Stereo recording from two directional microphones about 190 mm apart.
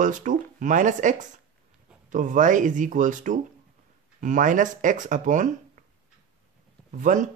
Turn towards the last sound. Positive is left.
turn(degrees=-40)  # may be behind; listen again after turning